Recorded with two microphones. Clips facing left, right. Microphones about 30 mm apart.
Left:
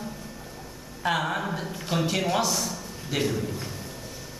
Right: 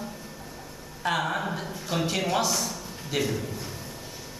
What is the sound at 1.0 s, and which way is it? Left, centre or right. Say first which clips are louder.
A man's voice: left 1 dB; centre.